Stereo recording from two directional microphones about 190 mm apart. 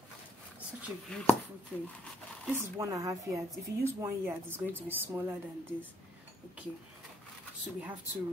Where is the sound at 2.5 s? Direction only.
15° right (ahead or behind).